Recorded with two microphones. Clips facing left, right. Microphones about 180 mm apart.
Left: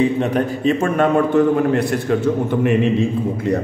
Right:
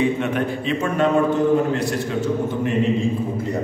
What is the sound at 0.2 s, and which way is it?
Speech, 40° left (ahead or behind).